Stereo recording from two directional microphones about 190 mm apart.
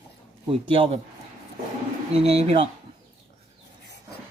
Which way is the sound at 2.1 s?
30° right (ahead or behind).